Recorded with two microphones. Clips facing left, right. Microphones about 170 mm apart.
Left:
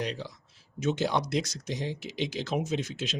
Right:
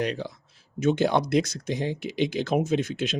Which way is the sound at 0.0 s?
55° right (ahead or behind).